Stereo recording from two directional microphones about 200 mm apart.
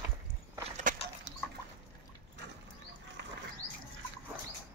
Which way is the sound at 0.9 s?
40° right (ahead or behind).